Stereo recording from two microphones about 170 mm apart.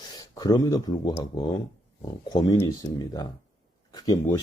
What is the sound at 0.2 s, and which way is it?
Speech, 25° left (ahead or behind).